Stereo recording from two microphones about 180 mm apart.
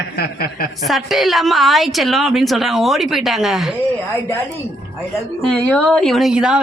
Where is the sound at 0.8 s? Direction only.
Centre (ahead or behind).